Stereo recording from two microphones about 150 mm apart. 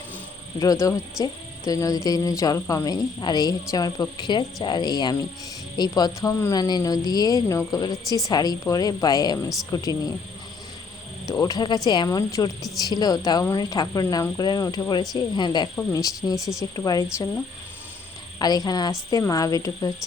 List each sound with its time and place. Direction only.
0.6 s speech: 20° left (ahead or behind)
11.3 s speech: 25° left (ahead or behind)